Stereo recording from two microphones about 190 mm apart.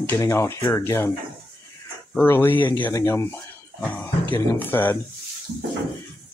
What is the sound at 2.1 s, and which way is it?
Speech, 10° left (ahead or behind).